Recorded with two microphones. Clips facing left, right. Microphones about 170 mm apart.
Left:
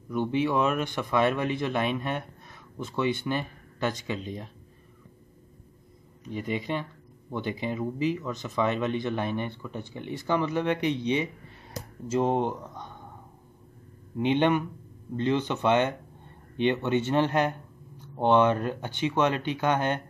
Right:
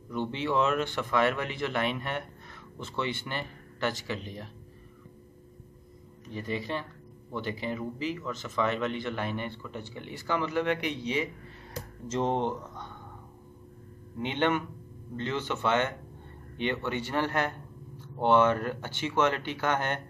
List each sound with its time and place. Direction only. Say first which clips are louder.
0.1 s speech: left 4 dB; 10° left (ahead or behind)
6.3 s speech: left 3 dB; 15° left (ahead or behind)
12.1 s speech: left 3 dB; 10° left (ahead or behind)
14.2 s speech: left 5 dB; 15° left (ahead or behind)